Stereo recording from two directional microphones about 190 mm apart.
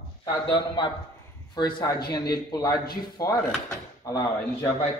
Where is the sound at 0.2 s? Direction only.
25° left (ahead or behind).